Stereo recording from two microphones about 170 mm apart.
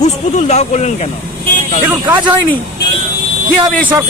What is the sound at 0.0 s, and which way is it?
Speech, 40° left (ahead or behind).